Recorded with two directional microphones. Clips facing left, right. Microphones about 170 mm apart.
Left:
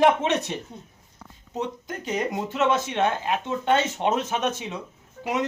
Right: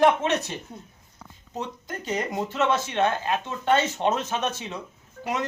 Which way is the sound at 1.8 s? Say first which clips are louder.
Right 1 dB; 15° left (ahead or behind).